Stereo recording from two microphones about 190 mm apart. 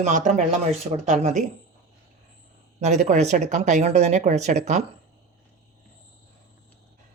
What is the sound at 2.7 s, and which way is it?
Speech, 40° right (ahead or behind).